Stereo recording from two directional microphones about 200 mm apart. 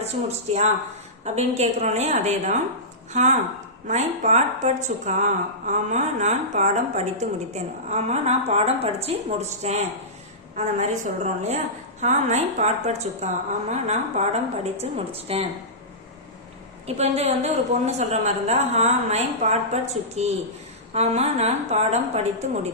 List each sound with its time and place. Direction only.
0.0 s a woman's voice: 35° right (ahead or behind)
16.8 s a woman's voice: 35° right (ahead or behind)